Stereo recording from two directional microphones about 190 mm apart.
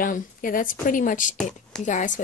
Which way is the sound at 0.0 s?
45° left (ahead or behind).